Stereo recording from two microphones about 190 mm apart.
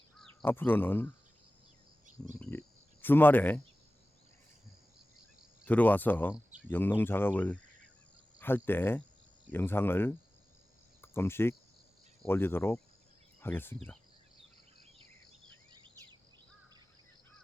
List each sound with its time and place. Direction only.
0.4 s speech: 10° left (ahead or behind)
2.4 s speech: 10° left (ahead or behind)
5.6 s speech: 10° left (ahead or behind)
14.9 s cricket: 25° right (ahead or behind)